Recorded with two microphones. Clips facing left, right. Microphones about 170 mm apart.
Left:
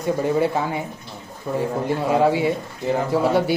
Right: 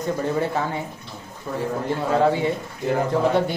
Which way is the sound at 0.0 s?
10° left (ahead or behind).